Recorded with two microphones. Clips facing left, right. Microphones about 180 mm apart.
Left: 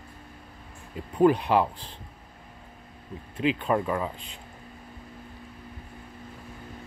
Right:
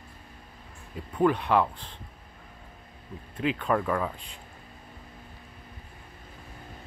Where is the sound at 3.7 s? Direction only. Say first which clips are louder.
Left 1 dB; 15° left (ahead or behind).